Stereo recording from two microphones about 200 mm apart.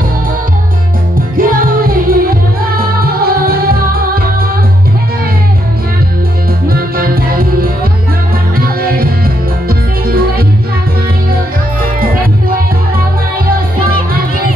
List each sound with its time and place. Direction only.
1.3 s music: 45° right (ahead or behind)
6.7 s music: 50° right (ahead or behind)
11.8 s music: 45° right (ahead or behind)